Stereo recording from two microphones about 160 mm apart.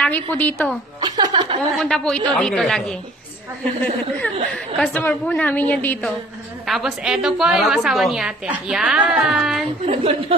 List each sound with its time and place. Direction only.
0.0 s a woman's voice: 10° left (ahead or behind)
1.0 s a sound: 25° right (ahead or behind)
1.8 s a woman's voice: 5° left (ahead or behind)
4.5 s a woman's voice: centre (ahead or behind)
6.7 s a woman's voice: centre (ahead or behind)
9.8 s a woman's voice: 35° right (ahead or behind)